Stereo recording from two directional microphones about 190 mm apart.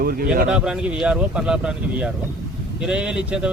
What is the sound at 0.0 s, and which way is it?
Speech, 50° right (ahead or behind).